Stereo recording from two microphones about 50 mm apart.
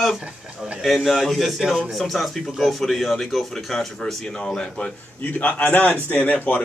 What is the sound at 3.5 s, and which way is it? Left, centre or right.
Speech, centre.